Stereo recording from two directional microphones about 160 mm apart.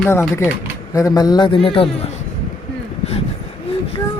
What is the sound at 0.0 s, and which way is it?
Speech, 15° left (ahead or behind).